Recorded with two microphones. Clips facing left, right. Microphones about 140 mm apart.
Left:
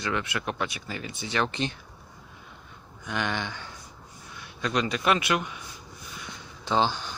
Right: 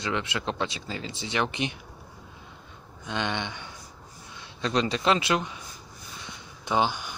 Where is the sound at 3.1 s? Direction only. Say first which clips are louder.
Even; 25° right (ahead or behind).